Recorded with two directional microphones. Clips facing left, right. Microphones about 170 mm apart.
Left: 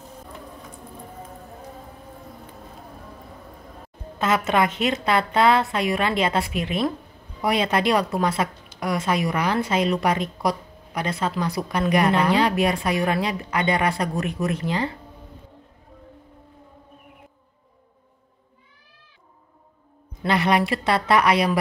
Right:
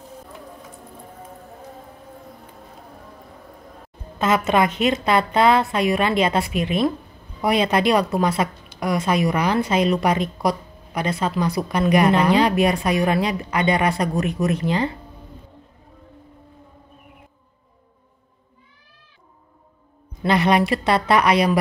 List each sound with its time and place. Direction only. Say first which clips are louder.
4.2 s a woman's voice: right 2 dB; 20° right (ahead or behind)
20.2 s a woman's voice: right 3 dB; 20° right (ahead or behind)